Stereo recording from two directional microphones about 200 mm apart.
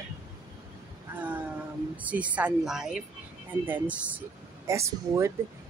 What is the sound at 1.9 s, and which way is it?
Speech, 5° right (ahead or behind).